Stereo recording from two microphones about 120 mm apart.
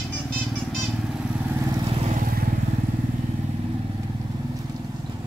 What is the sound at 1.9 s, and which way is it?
Vehicle, 60° right (ahead or behind).